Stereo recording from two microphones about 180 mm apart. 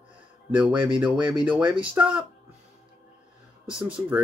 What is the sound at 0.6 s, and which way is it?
Speech, 5° right (ahead or behind).